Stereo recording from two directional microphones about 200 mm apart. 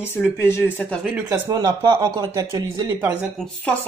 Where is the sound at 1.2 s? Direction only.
20° right (ahead or behind).